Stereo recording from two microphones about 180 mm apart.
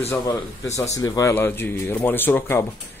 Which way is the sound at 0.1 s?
15° left (ahead or behind).